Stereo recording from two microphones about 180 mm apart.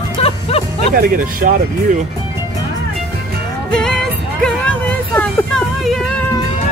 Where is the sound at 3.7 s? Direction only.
5° left (ahead or behind).